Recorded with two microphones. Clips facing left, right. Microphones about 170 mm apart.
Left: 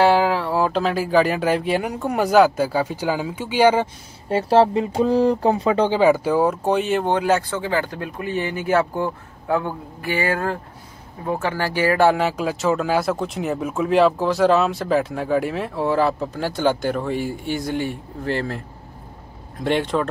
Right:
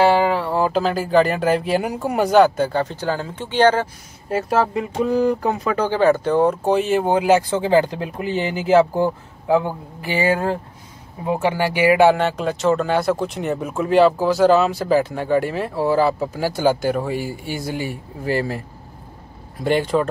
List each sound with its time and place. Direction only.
0.0 s speech: centre (ahead or behind)
4.3 s speech: 30° left (ahead or behind)
5.9 s a man's voice: 10° left (ahead or behind); by 9.1 s 25° right (ahead or behind)
9.5 s a man's voice: 15° right (ahead or behind)
12.1 s speech: centre (ahead or behind)